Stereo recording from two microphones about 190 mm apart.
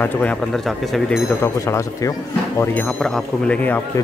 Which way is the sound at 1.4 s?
15° left (ahead or behind).